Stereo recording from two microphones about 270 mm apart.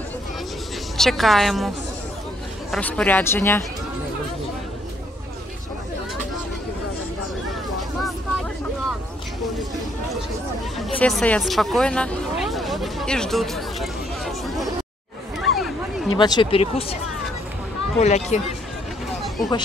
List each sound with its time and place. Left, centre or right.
0.9 s a woman's voice: centre
2.7 s speech: centre
11.0 s a sound: centre
16.1 s speech: centre
18.0 s speech: left
19.2 s vehicle: centre